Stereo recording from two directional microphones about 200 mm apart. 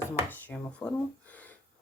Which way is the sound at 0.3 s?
10° left (ahead or behind).